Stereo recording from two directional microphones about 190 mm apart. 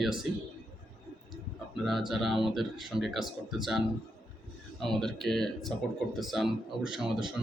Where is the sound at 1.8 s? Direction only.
Centre (ahead or behind).